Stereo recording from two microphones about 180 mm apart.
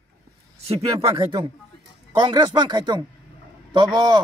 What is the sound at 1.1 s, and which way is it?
A man's voice, 30° right (ahead or behind).